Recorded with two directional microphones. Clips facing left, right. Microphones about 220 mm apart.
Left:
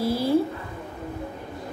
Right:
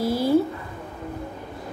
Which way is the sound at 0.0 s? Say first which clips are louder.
Right 2 dB; centre (ahead or behind).